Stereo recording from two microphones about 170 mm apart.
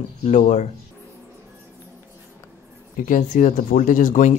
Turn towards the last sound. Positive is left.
turn(degrees=50)  # may be behind; listen again after turning